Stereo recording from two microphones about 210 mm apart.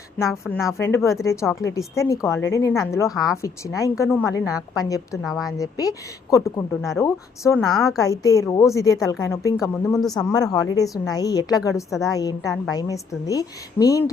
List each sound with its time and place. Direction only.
0.5 s a woman's voice: 15° left (ahead or behind)
5.2 s a woman's voice: centre (ahead or behind)
5.5 s a woman's voice: 15° left (ahead or behind)
7.6 s a woman's voice: centre (ahead or behind)
7.9 s a woman's voice: 15° left (ahead or behind)
11.7 s a woman's voice: centre (ahead or behind)
12.1 s a woman's voice: 15° left (ahead or behind)